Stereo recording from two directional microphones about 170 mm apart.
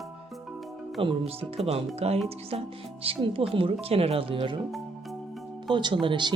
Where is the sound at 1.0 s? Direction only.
35° right (ahead or behind).